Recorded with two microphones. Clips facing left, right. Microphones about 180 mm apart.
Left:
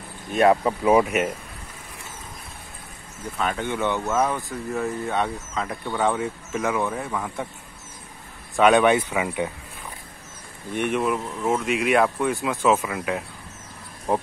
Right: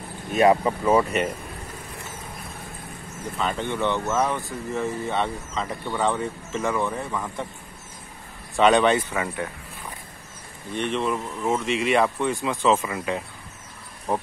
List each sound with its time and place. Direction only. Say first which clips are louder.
0.3 s speech: even; centre (ahead or behind)
0.8 s a man's voice: left 2 dB; 10° left (ahead or behind)
3.3 s speech: left 1 dB; centre (ahead or behind)
3.6 s a man's voice: right 1 dB; 15° left (ahead or behind)
4.2 s speech: left 1 dB; 5° left (ahead or behind)
8.5 s a man's voice: left 1 dB; centre (ahead or behind)
10.7 s speech: left 2 dB; 10° left (ahead or behind)
14.1 s a man's voice: left 2 dB; 15° left (ahead or behind)